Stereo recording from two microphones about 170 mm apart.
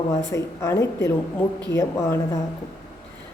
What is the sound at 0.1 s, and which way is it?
A woman's voice, 15° left (ahead or behind).